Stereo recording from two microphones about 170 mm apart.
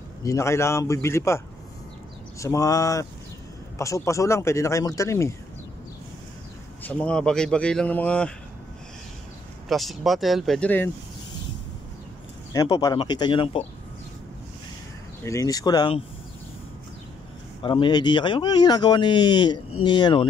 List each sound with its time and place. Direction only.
0.2 s speech: 20° left (ahead or behind)
6.8 s speech: 5° left (ahead or behind)
9.7 s speech: centre (ahead or behind)
12.5 s speech: 25° left (ahead or behind)
15.2 s speech: 20° left (ahead or behind)
17.6 s speech: 30° left (ahead or behind)